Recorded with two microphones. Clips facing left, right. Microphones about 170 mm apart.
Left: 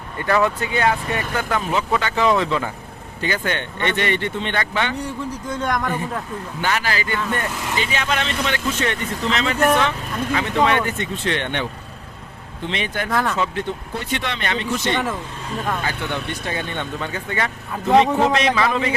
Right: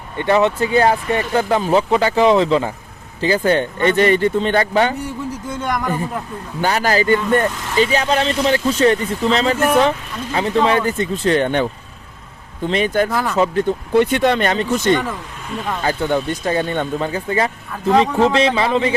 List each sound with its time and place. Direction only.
0.2 s speech: 25° right (ahead or behind)
0.7 s speech: 35° right (ahead or behind)
5.5 s a man's voice: 5° right (ahead or behind)
6.6 s speech: 40° right (ahead or behind)
13.1 s a man's voice: 5° right (ahead or behind)
13.3 s speech: 40° right (ahead or behind)
13.9 s speech: 60° right (ahead or behind)
14.2 s speech: 45° right (ahead or behind); by 18.9 s 30° right (ahead or behind)